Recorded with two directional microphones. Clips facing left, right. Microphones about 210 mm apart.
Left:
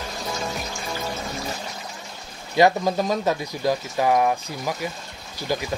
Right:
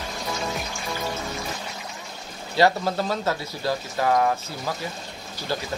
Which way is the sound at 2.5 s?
15° left (ahead or behind).